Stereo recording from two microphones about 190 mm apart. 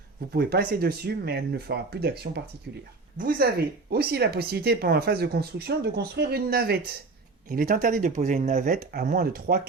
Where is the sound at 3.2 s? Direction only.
45° right (ahead or behind).